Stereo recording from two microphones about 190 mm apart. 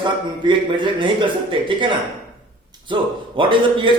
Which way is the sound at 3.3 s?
25° right (ahead or behind).